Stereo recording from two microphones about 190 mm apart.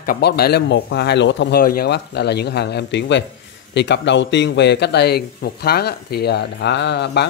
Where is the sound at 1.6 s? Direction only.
50° left (ahead or behind).